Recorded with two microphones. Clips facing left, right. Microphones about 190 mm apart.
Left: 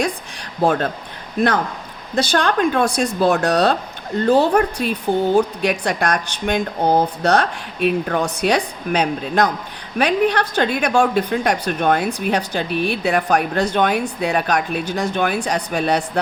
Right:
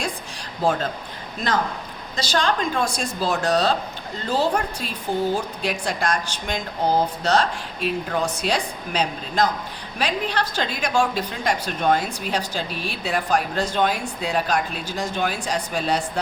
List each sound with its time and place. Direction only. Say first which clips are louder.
0.6 s a woman's voice: left 4 dB; 60° left (ahead or behind)
2.1 s a woman's voice: left 5 dB; 55° left (ahead or behind)